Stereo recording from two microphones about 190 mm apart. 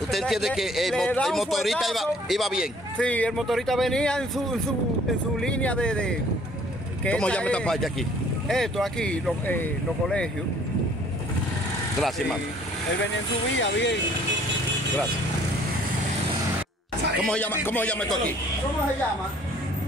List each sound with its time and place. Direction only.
0.1 s a man's voice: centre (ahead or behind)
13.6 s speech: 70° left (ahead or behind)
17.2 s speech: 5° left (ahead or behind)